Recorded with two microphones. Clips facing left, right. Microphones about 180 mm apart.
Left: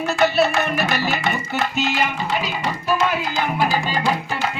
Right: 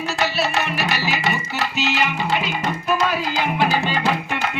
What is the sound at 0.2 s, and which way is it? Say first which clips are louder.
Music: left 5 dB; 55° left (ahead or behind).